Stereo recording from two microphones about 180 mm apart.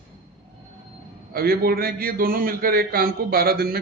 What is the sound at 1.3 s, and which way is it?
A man's voice, 55° right (ahead or behind).